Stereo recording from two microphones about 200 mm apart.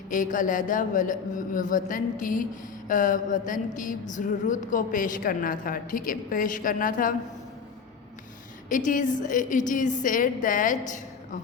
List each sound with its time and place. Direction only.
0.1 s speech: 40° left (ahead or behind)
8.7 s speech: 40° left (ahead or behind)